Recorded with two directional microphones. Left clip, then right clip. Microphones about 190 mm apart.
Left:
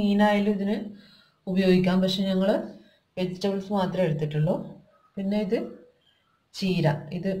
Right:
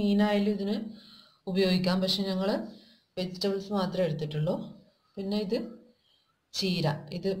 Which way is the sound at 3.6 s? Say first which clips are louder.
Left 4 dB; 20° right (ahead or behind).